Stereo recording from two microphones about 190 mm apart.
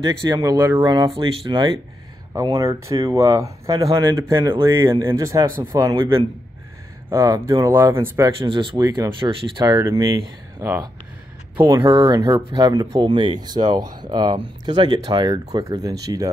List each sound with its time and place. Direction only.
0.0 s speech: 20° right (ahead or behind)
8.4 s speech: 25° right (ahead or behind)